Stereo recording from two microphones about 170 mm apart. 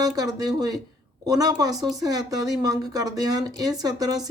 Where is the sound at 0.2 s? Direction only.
20° right (ahead or behind).